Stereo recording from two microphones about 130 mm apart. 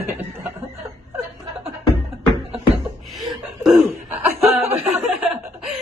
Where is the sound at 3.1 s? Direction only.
Centre (ahead or behind).